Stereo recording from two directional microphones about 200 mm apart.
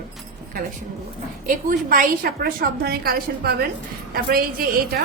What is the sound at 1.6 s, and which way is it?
A woman's voice, 45° right (ahead or behind).